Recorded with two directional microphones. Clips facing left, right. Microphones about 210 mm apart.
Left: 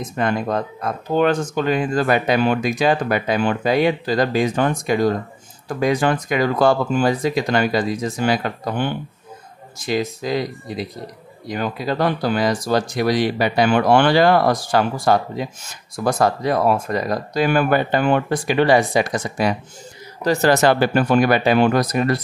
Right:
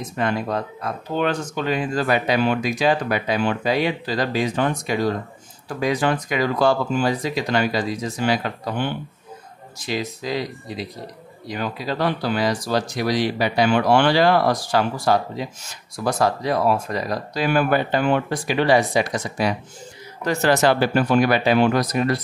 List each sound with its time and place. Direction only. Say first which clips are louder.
0.2 s speech: left 2 dB; 45° left (ahead or behind)